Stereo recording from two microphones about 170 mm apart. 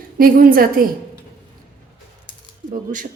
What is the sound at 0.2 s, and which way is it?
Speech, 60° right (ahead or behind).